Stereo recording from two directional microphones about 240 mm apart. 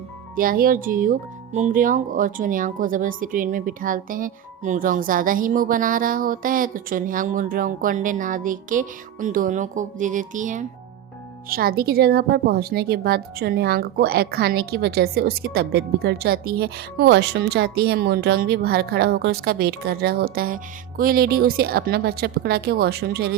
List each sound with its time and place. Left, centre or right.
0.3 s speech: right